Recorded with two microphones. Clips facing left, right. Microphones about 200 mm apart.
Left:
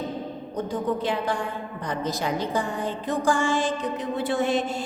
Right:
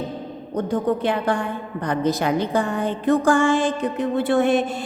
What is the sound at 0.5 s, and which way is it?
A woman's voice, 60° right (ahead or behind).